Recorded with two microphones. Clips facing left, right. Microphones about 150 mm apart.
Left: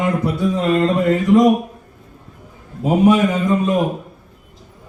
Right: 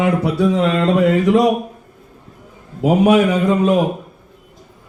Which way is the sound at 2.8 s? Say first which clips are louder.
Right 1 dB; 70° right (ahead or behind).